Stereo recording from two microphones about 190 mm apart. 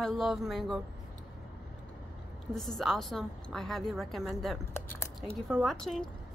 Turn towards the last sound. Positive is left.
turn(degrees=5)  # may be behind; listen again after turning